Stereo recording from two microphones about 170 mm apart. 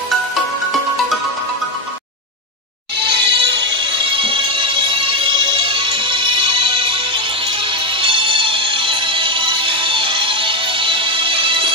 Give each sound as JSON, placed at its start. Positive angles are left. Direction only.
{"t": 3.0, "sound": "music", "side_deg": -75}
{"t": 3.7, "sound": "music", "side_deg": -30}
{"t": 8.0, "sound": "music", "side_deg": -30}